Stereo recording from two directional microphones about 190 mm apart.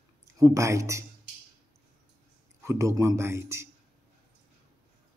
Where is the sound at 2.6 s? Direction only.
15° right (ahead or behind).